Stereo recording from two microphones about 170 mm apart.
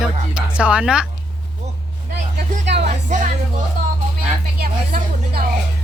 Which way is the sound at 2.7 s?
80° right.